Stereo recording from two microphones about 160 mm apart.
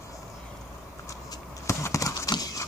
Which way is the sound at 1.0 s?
20° left (ahead or behind).